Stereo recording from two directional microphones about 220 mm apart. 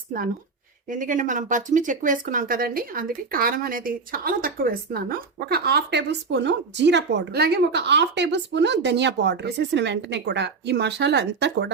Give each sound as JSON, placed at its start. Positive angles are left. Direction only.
{"t": 0.9, "sound": "speech", "side_deg": -35}